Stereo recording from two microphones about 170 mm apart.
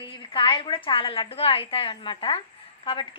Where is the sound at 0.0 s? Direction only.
30° left (ahead or behind).